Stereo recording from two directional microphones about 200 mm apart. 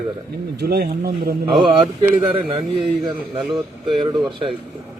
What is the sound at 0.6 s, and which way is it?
Speech, 50° right (ahead or behind).